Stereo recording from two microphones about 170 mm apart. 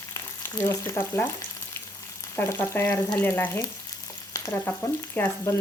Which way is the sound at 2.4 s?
15° left (ahead or behind).